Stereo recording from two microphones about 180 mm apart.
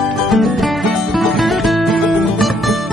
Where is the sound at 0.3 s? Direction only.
Centre (ahead or behind).